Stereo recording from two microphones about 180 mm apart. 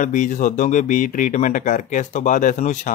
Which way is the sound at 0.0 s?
45° left (ahead or behind).